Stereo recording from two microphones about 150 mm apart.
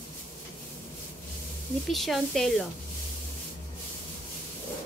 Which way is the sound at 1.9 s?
Centre (ahead or behind).